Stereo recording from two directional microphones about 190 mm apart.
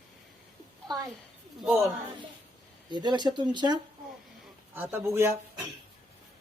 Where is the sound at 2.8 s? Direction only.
25° right (ahead or behind).